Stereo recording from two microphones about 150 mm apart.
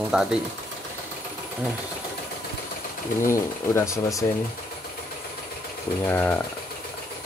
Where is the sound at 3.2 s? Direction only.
20° left (ahead or behind).